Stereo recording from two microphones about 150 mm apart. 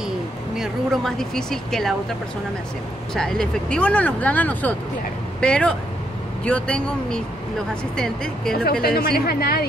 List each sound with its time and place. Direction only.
0.6 s speech: centre (ahead or behind)
3.2 s speech: 5° left (ahead or behind)
8.8 s speech: 90° left